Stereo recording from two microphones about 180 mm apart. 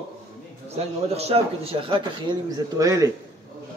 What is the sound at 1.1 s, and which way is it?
A man's voice, 35° right (ahead or behind).